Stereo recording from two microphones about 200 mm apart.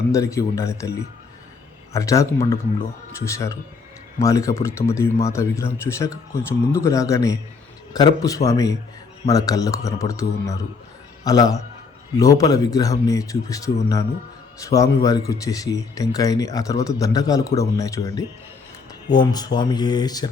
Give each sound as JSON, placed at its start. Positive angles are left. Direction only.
{"t": 0.1, "sound": "speech", "side_deg": 15}
{"t": 1.9, "sound": "a man's voice", "side_deg": 15}
{"t": 14.6, "sound": "speech", "side_deg": 15}